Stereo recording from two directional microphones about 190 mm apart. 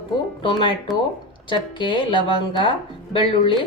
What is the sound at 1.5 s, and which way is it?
A woman's voice, 25° left (ahead or behind).